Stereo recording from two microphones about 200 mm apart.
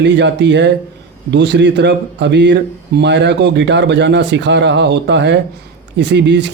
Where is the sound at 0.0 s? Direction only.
60° right (ahead or behind).